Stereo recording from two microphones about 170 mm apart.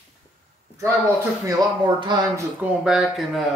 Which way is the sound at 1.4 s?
25° right (ahead or behind).